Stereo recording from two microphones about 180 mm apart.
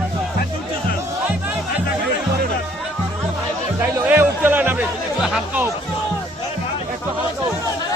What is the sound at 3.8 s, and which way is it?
Music, 10° right (ahead or behind).